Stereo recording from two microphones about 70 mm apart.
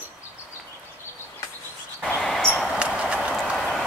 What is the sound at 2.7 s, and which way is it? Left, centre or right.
Clip-clop, centre.